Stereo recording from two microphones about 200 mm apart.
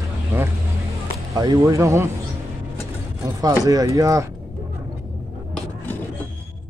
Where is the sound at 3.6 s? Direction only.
15° right (ahead or behind).